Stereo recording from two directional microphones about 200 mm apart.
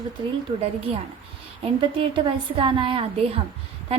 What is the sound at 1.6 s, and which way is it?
A woman's voice, 25° right (ahead or behind).